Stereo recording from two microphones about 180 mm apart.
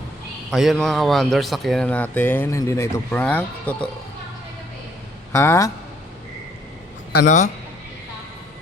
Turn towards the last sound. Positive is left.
turn(degrees=45)  # may be behind; listen again after turning